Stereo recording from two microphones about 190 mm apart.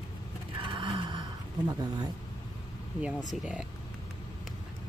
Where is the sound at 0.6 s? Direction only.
25° right (ahead or behind).